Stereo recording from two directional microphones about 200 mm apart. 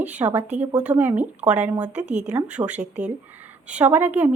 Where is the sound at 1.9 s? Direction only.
35° right (ahead or behind).